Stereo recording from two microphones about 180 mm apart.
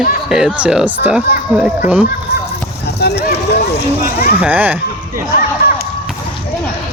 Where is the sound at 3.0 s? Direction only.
65° left (ahead or behind).